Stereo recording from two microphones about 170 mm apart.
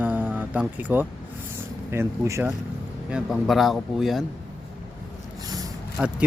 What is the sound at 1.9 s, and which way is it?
Speech, 15° right (ahead or behind).